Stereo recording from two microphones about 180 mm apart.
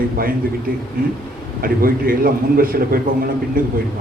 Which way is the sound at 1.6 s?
55° right (ahead or behind).